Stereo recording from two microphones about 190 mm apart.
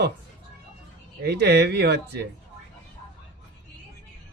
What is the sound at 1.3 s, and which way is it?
Speech, 60° right (ahead or behind).